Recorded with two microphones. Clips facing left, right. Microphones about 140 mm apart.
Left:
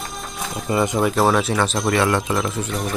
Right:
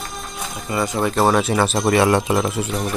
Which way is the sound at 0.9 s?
Centre (ahead or behind).